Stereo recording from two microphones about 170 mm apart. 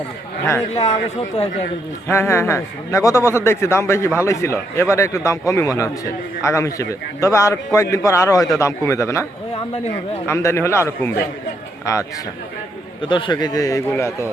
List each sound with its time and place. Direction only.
2.0 s a man's voice: 15° left (ahead or behind)
10.2 s a man's voice: 15° left (ahead or behind)
13.0 s a man's voice: 30° left (ahead or behind)